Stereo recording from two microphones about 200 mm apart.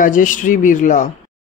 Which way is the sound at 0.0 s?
40° left (ahead or behind).